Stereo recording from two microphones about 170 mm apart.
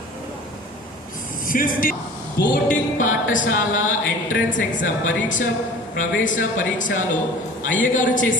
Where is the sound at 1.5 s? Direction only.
55° left (ahead or behind).